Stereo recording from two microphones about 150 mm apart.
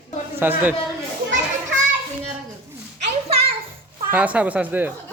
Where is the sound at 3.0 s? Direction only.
40° right (ahead or behind).